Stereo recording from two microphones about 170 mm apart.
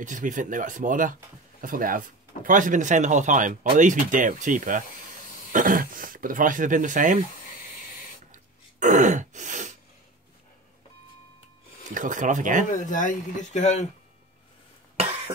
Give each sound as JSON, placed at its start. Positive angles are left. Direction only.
{"t": 0.0, "sound": "speech", "side_deg": -50}
{"t": 8.3, "sound": "throat clearing", "side_deg": -45}
{"t": 11.9, "sound": "speech", "side_deg": -50}
{"t": 12.7, "sound": "speech", "side_deg": 50}
{"t": 15.0, "sound": "cough", "side_deg": -40}